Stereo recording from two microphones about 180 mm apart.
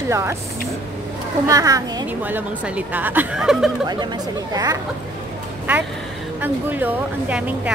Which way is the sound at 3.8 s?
20° right (ahead or behind).